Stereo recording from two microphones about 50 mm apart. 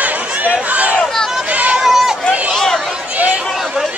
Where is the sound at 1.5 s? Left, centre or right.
Right.